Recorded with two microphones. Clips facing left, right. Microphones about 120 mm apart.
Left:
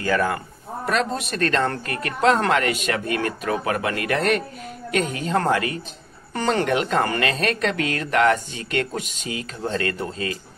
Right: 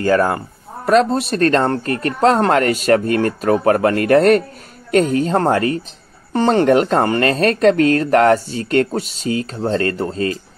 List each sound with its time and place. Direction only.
0.0 s speech: 45° right (ahead or behind)